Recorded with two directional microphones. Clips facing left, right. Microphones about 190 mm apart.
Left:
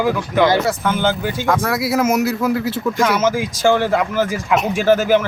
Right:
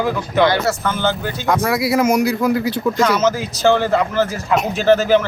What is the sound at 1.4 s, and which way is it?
Speech, centre (ahead or behind).